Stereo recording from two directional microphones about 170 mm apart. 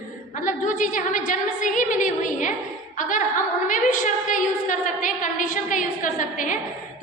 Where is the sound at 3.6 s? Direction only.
50° left (ahead or behind).